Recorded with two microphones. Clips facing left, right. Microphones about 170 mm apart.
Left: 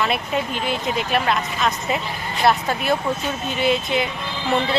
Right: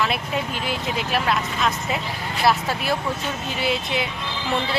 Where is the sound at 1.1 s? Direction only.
Centre (ahead or behind).